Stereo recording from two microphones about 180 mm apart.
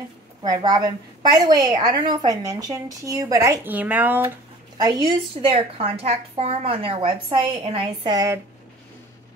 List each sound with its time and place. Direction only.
0.4 s a woman's voice: 25° right (ahead or behind); by 4.2 s 10° right (ahead or behind)
4.7 s a woman's voice: 20° right (ahead or behind)